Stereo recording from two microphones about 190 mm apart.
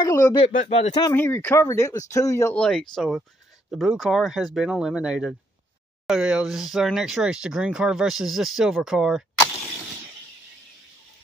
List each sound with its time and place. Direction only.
0.0 s speech: 20° left (ahead or behind)
0.5 s speech: 40° left (ahead or behind)
1.0 s speech: 10° left (ahead or behind)
2.6 s speech: 5° left (ahead or behind)